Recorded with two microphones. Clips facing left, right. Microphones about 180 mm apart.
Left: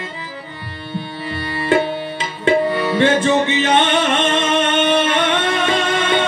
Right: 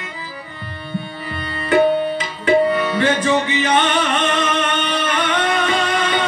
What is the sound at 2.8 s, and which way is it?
Music, 25° left (ahead or behind).